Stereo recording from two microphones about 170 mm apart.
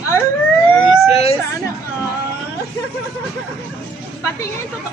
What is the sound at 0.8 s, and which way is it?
Emergency vehicle, 35° left (ahead or behind).